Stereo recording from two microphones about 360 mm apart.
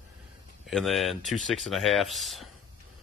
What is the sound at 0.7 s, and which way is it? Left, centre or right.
Speech, centre.